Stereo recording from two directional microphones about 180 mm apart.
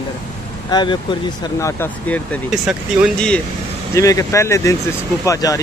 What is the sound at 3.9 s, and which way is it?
Speech, 20° left (ahead or behind).